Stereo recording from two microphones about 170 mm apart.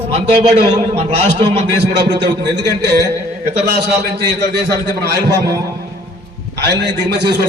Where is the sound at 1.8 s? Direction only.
80° right.